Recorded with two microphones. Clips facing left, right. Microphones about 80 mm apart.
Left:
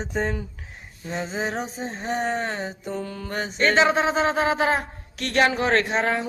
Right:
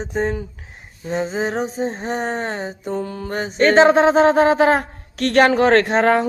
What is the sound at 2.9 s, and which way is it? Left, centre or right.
Mantra, right.